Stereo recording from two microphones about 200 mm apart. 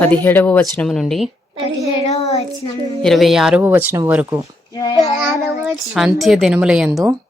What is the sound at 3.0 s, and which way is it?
Speech, centre (ahead or behind).